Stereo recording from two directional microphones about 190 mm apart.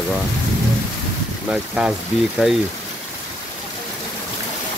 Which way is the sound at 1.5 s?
5° right (ahead or behind).